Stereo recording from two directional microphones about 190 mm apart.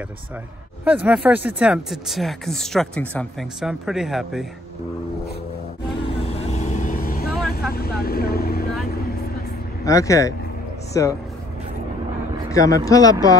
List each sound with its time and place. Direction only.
0.8 s speech: 5° right (ahead or behind)
5.9 s vehicle: 30° left (ahead or behind); by 7.2 s 50° left (ahead or behind)
7.7 s speech: 55° left (ahead or behind)
9.8 s speech: 15° left (ahead or behind)
12.4 s speech: 20° left (ahead or behind)